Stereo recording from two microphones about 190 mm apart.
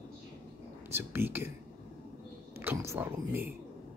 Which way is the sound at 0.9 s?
10° right (ahead or behind).